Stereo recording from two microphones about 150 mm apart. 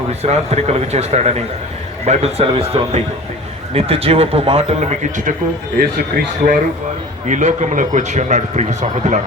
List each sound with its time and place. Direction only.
0.1 s a man's voice: 45° right (ahead or behind)
5.7 s a man's voice: 90° right
7.3 s a man's voice: 55° right (ahead or behind)